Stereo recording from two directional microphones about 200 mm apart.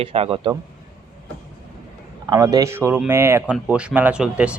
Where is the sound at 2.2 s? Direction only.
20° right (ahead or behind).